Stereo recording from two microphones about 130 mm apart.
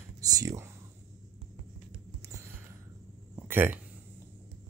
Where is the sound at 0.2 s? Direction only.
25° right (ahead or behind).